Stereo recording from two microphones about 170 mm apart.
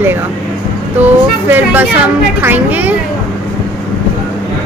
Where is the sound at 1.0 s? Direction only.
10° right (ahead or behind).